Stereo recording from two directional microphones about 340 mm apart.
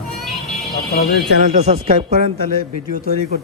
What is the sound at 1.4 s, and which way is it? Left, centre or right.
Speech, centre.